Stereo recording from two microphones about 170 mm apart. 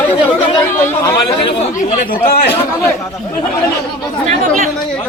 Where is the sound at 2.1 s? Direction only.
60° left (ahead or behind).